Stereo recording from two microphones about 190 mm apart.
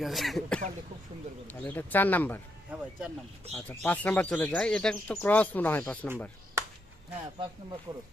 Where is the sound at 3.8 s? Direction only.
10° left (ahead or behind).